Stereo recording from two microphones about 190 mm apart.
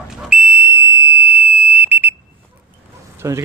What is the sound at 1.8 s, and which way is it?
Alarm, 10° right (ahead or behind).